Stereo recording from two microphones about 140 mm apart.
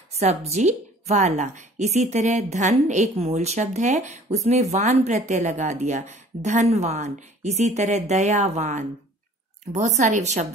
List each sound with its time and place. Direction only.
0.1 s a woman's voice: 50° right (ahead or behind)